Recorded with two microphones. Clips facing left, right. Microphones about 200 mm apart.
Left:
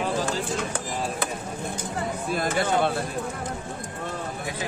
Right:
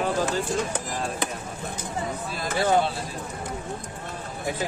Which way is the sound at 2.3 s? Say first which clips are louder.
Right 2 dB; 55° left (ahead or behind).